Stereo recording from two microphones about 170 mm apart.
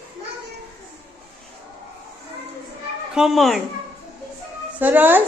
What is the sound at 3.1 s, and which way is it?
Speech, 5° right (ahead or behind).